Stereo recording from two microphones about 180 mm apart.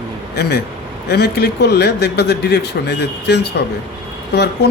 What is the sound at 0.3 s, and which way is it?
A man's voice, 65° left (ahead or behind).